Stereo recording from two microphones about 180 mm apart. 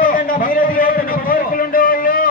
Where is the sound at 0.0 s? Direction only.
50° left (ahead or behind).